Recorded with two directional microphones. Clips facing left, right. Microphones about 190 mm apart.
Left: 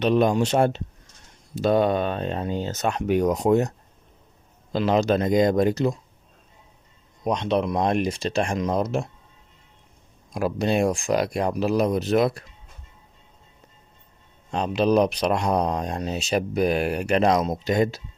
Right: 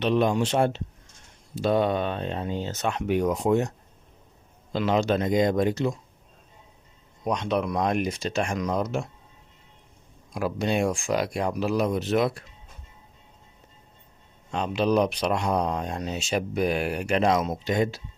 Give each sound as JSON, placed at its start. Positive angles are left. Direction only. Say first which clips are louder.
{"t": 0.0, "sound": "speech", "louder": "left 3 dB", "side_deg": 45}
{"t": 4.7, "sound": "speech", "louder": "left 3 dB", "side_deg": 40}
{"t": 7.3, "sound": "speech", "louder": "left 3 dB", "side_deg": 25}
{"t": 10.3, "sound": "speech", "louder": "left 3 dB", "side_deg": 40}
{"t": 14.5, "sound": "speech", "louder": "left 3 dB", "side_deg": 40}